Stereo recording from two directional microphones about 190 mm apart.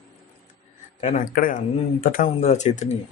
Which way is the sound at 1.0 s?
45° left (ahead or behind).